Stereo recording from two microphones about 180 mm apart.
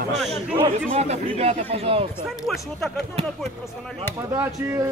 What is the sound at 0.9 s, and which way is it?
Speech, 35° right (ahead or behind).